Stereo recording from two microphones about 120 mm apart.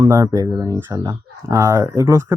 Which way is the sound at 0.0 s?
25° right (ahead or behind).